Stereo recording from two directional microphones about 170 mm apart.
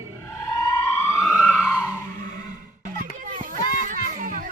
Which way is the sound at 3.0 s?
50° right (ahead or behind).